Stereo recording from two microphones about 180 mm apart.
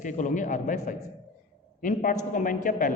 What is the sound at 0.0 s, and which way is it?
A man's voice, 45° left (ahead or behind).